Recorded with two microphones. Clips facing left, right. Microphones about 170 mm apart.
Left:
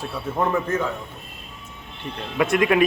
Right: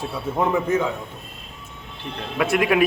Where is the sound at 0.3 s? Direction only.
10° right (ahead or behind).